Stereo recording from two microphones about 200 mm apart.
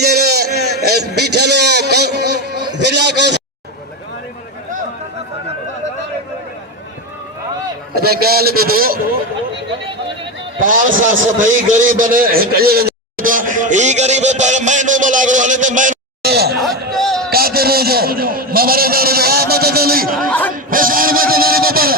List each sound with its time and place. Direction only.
0.0 s a sound: 50° right (ahead or behind)
7.9 s a man's voice: 50° right (ahead or behind)
10.6 s a man's voice: 45° right (ahead or behind)
16.9 s a sound: centre (ahead or behind)
17.3 s a man's voice: 50° right (ahead or behind)
20.7 s vehicle: 45° right (ahead or behind)